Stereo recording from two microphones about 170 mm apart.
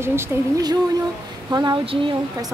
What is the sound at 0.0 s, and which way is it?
Speech, 15° right (ahead or behind).